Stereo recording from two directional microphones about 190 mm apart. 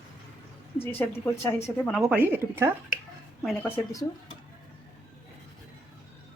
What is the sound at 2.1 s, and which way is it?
Speech, 10° right (ahead or behind).